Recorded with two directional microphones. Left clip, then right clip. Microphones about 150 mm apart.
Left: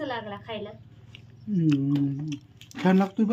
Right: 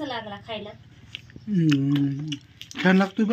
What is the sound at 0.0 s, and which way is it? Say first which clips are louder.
Speech: right 1 dB; 5° left (ahead or behind).